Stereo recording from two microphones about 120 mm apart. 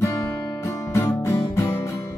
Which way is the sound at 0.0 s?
20° left (ahead or behind).